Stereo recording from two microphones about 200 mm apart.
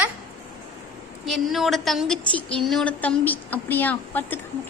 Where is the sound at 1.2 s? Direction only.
Centre (ahead or behind).